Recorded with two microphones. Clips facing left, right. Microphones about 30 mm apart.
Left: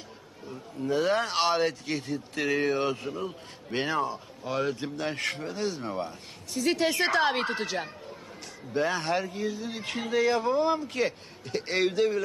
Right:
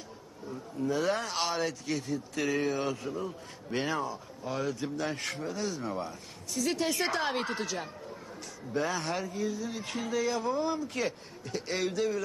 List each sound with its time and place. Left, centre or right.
0.9 s speech: left